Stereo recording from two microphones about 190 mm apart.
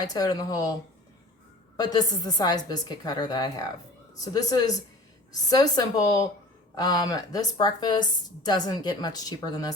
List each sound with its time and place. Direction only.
0.0 s a woman's voice: 20° left (ahead or behind)
1.7 s a woman's voice: 20° left (ahead or behind)